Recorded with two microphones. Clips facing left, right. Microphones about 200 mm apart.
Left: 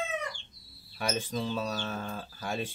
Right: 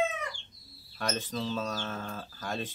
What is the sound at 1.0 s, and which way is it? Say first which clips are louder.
Speech: left 1 dB; 10° left (ahead or behind).